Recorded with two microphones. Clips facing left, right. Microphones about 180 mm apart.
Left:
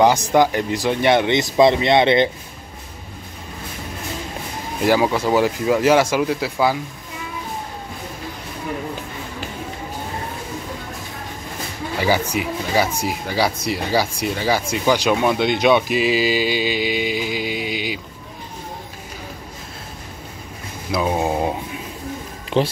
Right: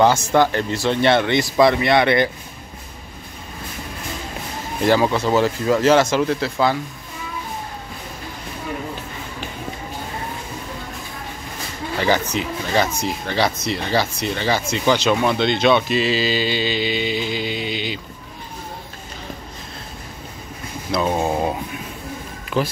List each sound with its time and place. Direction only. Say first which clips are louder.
0.0 s speech: left 1 dB; 15° left (ahead or behind)
4.8 s speech: even; 10° left (ahead or behind)
12.0 s speech: even; 10° left (ahead or behind)
20.9 s a sound: even; 10° left (ahead or behind)
22.5 s speech: left 3 dB; 30° left (ahead or behind)